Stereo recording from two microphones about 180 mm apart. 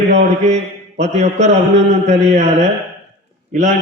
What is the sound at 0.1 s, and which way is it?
Mantra, 40° right (ahead or behind).